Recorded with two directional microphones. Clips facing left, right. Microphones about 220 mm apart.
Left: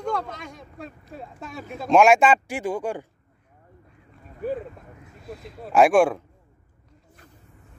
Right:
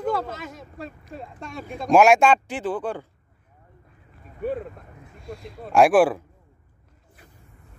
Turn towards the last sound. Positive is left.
turn(degrees=-5)  # may be behind; listen again after turning